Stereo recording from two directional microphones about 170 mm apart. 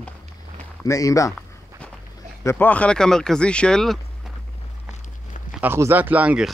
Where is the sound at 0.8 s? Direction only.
20° left (ahead or behind).